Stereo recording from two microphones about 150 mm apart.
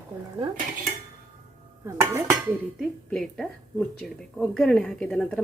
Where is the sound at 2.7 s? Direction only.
Centre (ahead or behind).